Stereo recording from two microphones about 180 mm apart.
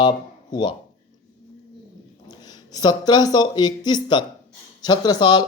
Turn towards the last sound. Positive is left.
turn(degrees=20)  # may be behind; listen again after turning